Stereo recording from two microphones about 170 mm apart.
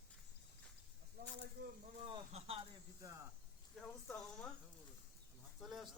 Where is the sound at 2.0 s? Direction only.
35° right (ahead or behind).